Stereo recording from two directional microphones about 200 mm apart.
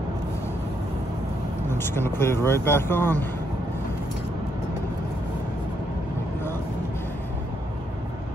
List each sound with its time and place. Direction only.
1.7 s speech: 10° left (ahead or behind)